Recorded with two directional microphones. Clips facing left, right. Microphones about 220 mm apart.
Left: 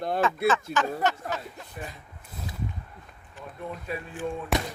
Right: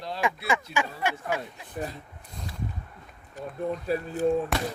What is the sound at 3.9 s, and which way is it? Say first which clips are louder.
Speech: right 6 dB; 35° right (ahead or behind).